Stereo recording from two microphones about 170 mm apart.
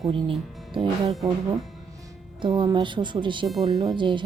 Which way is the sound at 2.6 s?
30° right (ahead or behind).